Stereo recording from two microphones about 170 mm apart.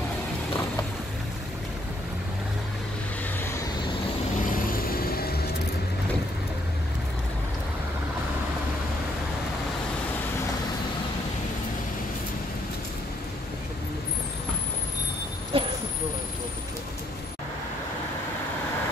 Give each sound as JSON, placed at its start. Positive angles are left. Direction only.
{"t": 4.5, "sound": "vehicle", "side_deg": 55}
{"t": 15.5, "sound": "vehicle", "side_deg": -35}